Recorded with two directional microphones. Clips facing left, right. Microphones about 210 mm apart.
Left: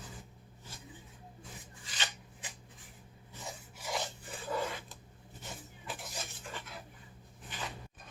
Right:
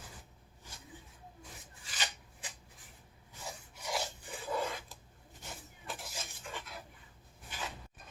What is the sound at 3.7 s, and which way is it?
Filing, centre (ahead or behind).